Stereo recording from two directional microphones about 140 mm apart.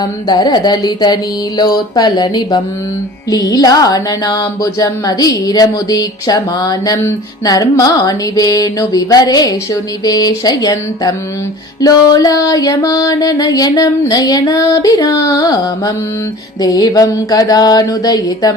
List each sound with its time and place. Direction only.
0.0 s music: 30° left (ahead or behind)